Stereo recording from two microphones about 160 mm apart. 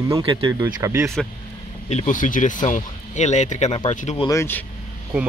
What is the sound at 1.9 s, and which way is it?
Speech, 50° left (ahead or behind).